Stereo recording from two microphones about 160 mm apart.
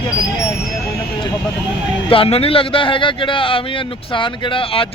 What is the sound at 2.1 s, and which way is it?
A man's voice, 35° left (ahead or behind).